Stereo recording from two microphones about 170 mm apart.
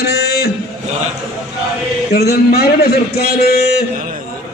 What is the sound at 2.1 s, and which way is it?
A man's voice, 70° left (ahead or behind).